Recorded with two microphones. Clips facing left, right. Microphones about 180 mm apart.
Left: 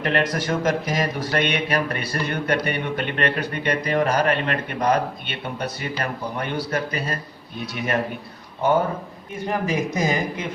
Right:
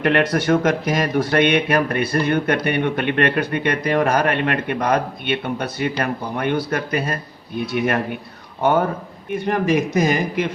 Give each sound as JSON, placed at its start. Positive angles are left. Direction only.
{"t": 0.0, "sound": "speech", "side_deg": -60}
{"t": 9.3, "sound": "a man's voice", "side_deg": -65}